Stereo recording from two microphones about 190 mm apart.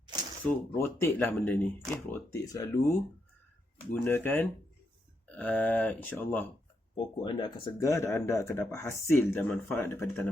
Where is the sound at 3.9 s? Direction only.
10° left (ahead or behind).